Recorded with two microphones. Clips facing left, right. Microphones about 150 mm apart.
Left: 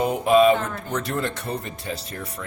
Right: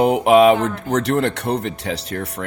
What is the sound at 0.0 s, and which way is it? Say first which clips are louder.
Speech: right 5 dB; 70° right (ahead or behind).